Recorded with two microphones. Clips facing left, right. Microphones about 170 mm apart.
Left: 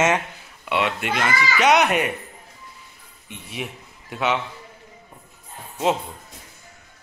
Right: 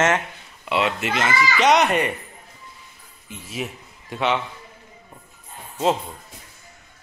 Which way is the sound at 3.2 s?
Centre (ahead or behind).